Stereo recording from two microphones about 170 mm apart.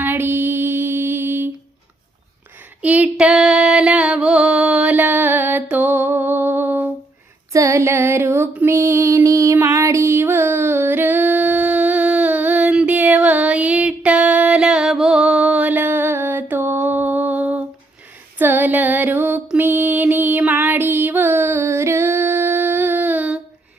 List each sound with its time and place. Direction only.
0.0 s music: 10° right (ahead or behind)
2.8 s a sound: 10° right (ahead or behind)
7.5 s female singing: 20° right (ahead or behind)
18.3 s mantra: 10° right (ahead or behind)